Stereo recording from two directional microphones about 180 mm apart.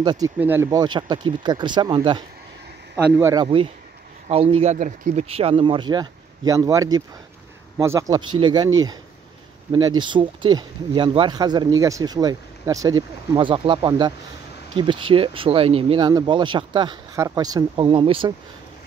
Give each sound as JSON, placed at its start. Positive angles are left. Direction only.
{"t": 0.0, "sound": "speech", "side_deg": -25}
{"t": 0.4, "sound": "speech", "side_deg": -10}
{"t": 3.2, "sound": "speech", "side_deg": -15}
{"t": 4.3, "sound": "speech", "side_deg": -35}
{"t": 8.2, "sound": "speech", "side_deg": -25}